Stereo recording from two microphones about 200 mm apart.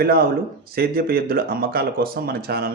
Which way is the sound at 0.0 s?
50° right (ahead or behind).